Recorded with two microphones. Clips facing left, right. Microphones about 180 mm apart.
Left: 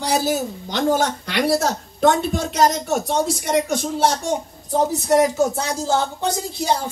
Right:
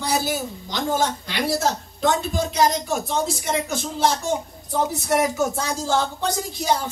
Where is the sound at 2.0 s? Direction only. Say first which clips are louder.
Left 5 dB; 55° left (ahead or behind).